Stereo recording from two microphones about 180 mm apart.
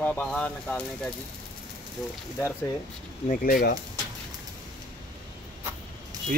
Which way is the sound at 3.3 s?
55° left (ahead or behind).